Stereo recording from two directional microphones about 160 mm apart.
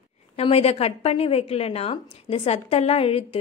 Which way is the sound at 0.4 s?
40° left (ahead or behind).